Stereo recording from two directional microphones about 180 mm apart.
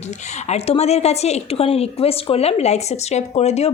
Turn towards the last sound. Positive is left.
turn(degrees=35)  # may be behind; listen again after turning